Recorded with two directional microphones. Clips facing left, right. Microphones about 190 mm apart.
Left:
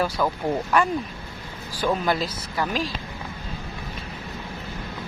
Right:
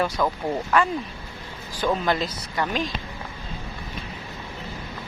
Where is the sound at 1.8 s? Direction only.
5° left (ahead or behind).